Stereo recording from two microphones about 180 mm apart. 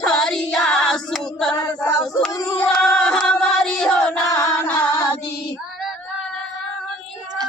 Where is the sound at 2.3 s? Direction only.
15° left (ahead or behind).